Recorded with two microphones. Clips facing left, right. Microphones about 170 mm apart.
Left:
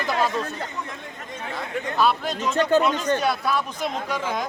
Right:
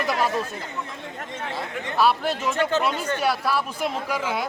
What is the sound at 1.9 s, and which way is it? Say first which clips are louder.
Speech: right 2 dB; 5° right (ahead or behind).